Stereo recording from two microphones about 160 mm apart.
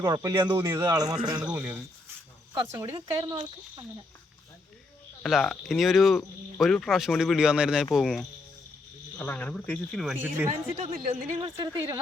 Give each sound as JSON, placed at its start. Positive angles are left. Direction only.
{"t": 0.0, "sound": "speech", "side_deg": -20}
{"t": 1.5, "sound": "speech", "side_deg": -10}
{"t": 2.9, "sound": "speech", "side_deg": -25}
{"t": 5.2, "sound": "speech", "side_deg": 0}
{"t": 9.1, "sound": "speech", "side_deg": 10}
{"t": 10.2, "sound": "speech", "side_deg": -15}
{"t": 10.8, "sound": "speech", "side_deg": -35}
{"t": 11.5, "sound": "speech", "side_deg": -20}